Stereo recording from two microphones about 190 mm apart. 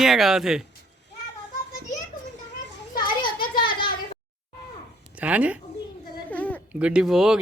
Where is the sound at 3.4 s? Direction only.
50° left (ahead or behind).